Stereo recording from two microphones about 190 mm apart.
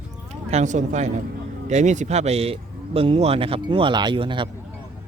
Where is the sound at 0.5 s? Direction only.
40° right (ahead or behind).